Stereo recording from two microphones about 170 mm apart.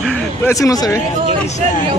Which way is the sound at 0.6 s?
20° left (ahead or behind).